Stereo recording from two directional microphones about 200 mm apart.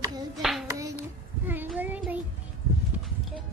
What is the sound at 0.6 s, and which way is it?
Hands, 15° right (ahead or behind).